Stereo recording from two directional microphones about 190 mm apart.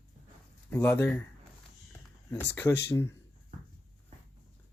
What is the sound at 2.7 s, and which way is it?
Speech, 60° left (ahead or behind).